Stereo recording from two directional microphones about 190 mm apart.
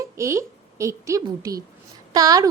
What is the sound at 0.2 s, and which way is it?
A woman's voice, 15° right (ahead or behind).